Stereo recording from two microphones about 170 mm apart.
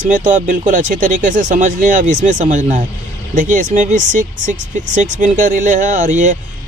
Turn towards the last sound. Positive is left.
turn(degrees=-45)  # may be behind; listen again after turning